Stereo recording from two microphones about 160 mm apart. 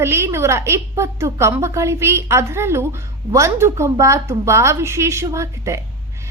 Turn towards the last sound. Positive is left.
turn(degrees=-20)  # may be behind; listen again after turning